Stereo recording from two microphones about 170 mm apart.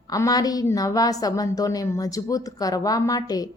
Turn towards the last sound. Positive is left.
turn(degrees=20)  # may be behind; listen again after turning